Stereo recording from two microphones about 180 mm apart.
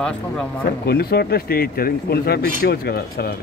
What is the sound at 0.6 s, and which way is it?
Speech, 60° left (ahead or behind).